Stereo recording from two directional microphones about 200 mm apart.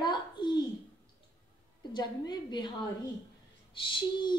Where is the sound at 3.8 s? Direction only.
25° left (ahead or behind).